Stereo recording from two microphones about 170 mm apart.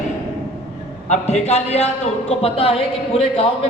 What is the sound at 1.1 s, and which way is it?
A man's voice, 40° left (ahead or behind).